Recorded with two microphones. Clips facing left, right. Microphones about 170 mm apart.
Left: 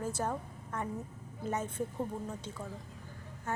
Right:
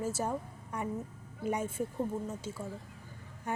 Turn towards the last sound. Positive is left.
turn(degrees=-15)  # may be behind; listen again after turning